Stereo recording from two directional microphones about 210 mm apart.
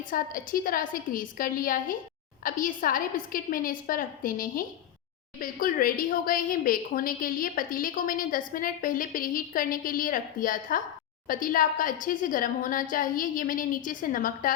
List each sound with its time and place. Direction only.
0.1 s a woman's voice: 40° left (ahead or behind)